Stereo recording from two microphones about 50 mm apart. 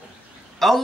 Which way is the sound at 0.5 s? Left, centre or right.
Centre.